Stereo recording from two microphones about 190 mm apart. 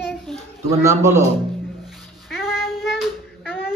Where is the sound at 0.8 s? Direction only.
15° right (ahead or behind).